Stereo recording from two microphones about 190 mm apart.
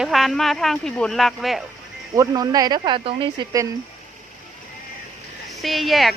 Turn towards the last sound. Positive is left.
turn(degrees=0)  # may be behind; listen again after turning